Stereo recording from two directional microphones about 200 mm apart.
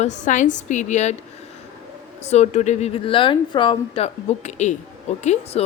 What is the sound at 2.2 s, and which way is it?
A woman's voice, 35° left (ahead or behind).